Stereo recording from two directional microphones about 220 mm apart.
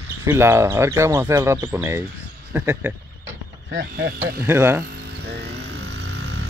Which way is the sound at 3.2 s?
55° right (ahead or behind).